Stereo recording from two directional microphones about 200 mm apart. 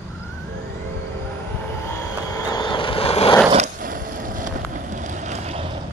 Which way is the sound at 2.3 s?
20° left (ahead or behind).